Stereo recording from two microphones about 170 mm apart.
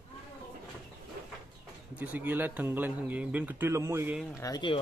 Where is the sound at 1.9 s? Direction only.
10° right (ahead or behind).